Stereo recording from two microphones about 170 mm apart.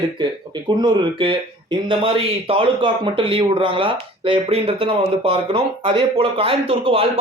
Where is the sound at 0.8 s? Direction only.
25° right (ahead or behind).